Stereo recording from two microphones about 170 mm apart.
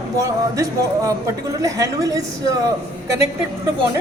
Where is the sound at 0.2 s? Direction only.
20° right (ahead or behind).